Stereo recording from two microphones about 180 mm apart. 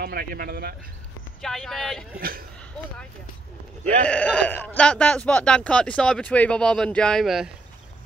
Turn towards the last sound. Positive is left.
turn(degrees=0)  # may be behind; listen again after turning